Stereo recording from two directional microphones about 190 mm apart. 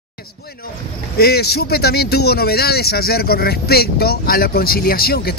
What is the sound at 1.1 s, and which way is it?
Speech, 55° left (ahead or behind).